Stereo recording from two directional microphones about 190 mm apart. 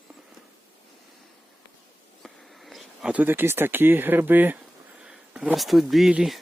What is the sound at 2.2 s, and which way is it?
Speech, centre (ahead or behind).